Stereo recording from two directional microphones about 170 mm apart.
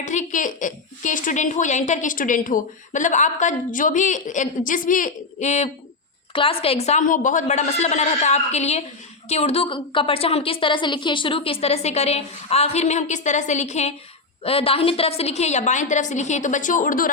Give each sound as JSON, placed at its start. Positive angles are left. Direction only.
{"t": 0.0, "sound": "a woman's voice", "side_deg": 45}